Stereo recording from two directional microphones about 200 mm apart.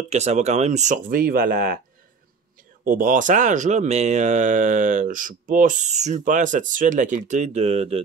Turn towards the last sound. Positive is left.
turn(degrees=-30)  # may be behind; listen again after turning